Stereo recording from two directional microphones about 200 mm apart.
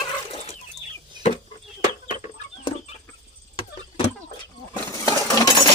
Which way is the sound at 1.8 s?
35° left (ahead or behind).